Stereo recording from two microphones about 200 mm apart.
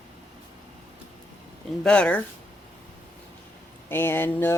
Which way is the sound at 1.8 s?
5° left (ahead or behind).